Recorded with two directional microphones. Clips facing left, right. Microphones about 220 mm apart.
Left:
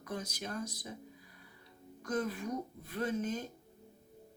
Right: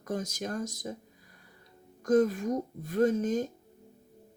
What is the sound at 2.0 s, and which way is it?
Speech, 45° right (ahead or behind).